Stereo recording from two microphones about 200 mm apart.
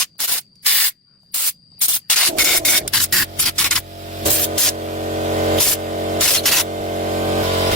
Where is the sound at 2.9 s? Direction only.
Centre (ahead or behind).